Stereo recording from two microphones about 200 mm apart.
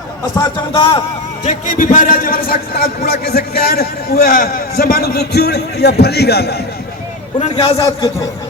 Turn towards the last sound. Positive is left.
turn(degrees=25)  # may be behind; listen again after turning